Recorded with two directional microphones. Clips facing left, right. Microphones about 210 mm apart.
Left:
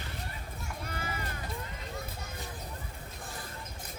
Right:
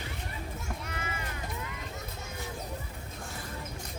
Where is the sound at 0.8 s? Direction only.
35° left (ahead or behind).